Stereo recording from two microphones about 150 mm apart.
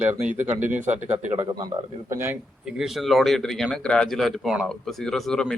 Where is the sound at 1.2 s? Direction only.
50° right (ahead or behind).